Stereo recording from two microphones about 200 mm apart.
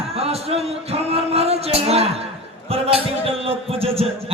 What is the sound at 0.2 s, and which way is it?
Music, 30° right (ahead or behind).